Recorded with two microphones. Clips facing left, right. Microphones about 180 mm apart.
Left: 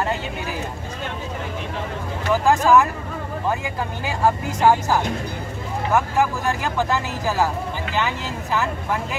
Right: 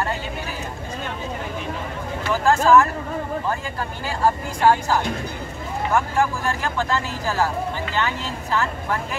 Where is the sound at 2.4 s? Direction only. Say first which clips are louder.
Right 1 dB; 15° left (ahead or behind).